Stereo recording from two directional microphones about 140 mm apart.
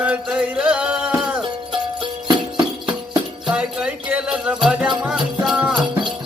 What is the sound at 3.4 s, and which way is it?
Music, 5° right (ahead or behind).